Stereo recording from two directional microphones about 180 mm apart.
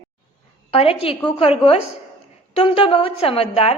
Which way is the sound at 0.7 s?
35° left (ahead or behind).